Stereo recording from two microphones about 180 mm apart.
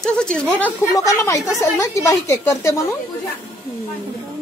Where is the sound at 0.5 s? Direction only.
15° left (ahead or behind).